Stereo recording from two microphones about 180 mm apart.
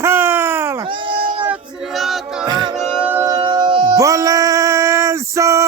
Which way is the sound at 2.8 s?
5° right (ahead or behind).